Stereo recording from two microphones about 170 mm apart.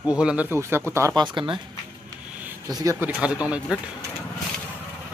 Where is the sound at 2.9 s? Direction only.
10° right (ahead or behind).